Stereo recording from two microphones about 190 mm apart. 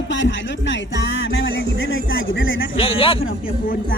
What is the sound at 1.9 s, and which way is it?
Speech, 90° left.